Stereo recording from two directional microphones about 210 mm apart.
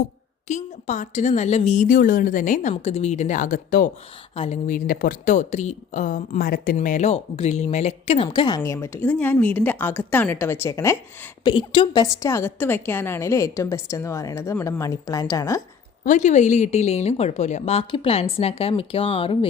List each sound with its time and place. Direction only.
0.4 s a woman's voice: 35° left (ahead or behind); by 10.9 s 15° left (ahead or behind)
11.4 s a woman's voice: 25° left (ahead or behind)
16.0 s a woman's voice: 35° left (ahead or behind)